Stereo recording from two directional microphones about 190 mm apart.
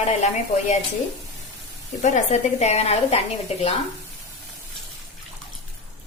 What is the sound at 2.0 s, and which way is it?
A woman's voice, 35° left (ahead or behind).